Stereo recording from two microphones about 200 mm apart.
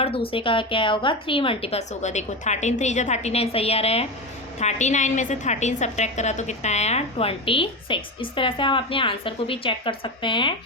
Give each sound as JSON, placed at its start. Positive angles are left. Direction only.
{"t": 0.0, "sound": "a woman's voice", "side_deg": 25}